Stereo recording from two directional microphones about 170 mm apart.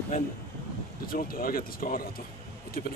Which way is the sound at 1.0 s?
60° left (ahead or behind).